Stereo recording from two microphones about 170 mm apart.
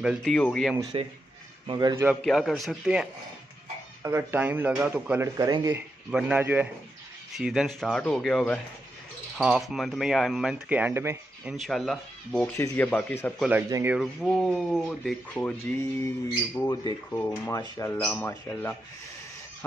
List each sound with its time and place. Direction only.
0.0 s speech: 5° right (ahead or behind)
0.3 s speech: 5° left (ahead or behind)
1.7 s a man's voice: 25° right (ahead or behind)
2.2 s speech: centre (ahead or behind)
11.5 s speech: centre (ahead or behind)
12.5 s speech: 15° left (ahead or behind)
13.4 s a man's voice: 10° right (ahead or behind)
13.9 s speech: centre (ahead or behind)
16.6 s speech: 25° left (ahead or behind)